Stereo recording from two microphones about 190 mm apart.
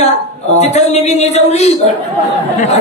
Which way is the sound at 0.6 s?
35° left (ahead or behind).